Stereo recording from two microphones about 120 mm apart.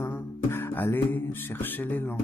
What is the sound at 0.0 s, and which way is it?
Music, 20° left (ahead or behind).